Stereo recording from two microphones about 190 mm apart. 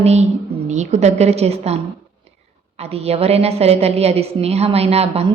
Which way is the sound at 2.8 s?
35° right (ahead or behind).